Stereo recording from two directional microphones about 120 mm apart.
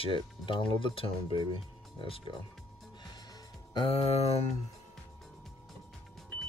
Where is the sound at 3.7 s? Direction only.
50° left (ahead or behind).